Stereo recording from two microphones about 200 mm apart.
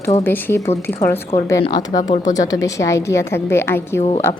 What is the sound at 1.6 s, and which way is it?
A woman's voice, 20° left (ahead or behind).